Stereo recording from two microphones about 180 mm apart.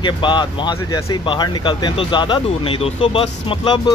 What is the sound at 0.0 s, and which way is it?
Speech, 25° left (ahead or behind).